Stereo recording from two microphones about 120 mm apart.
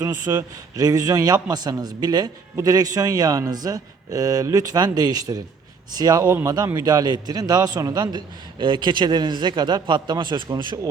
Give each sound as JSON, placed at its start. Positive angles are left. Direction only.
{"t": 0.0, "sound": "a man's voice", "side_deg": -30}
{"t": 6.2, "sound": "speech", "side_deg": -20}
{"t": 6.7, "sound": "a man's voice", "side_deg": -35}